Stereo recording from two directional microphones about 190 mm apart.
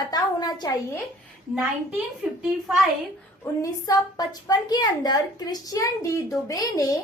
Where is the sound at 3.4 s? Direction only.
20° left (ahead or behind).